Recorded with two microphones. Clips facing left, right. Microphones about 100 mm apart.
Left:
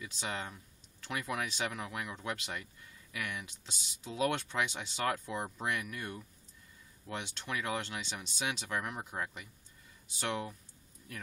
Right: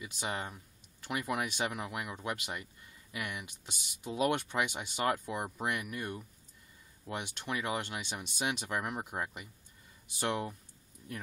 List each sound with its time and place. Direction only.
0.0 s speech: 15° right (ahead or behind)